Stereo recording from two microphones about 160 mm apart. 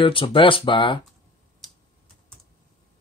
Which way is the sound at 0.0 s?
35° left (ahead or behind).